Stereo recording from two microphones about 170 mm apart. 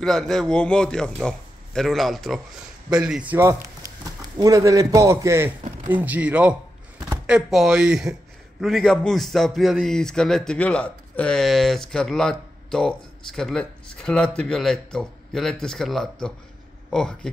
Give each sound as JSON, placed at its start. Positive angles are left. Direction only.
{"t": 0.0, "sound": "a man's voice", "side_deg": 0}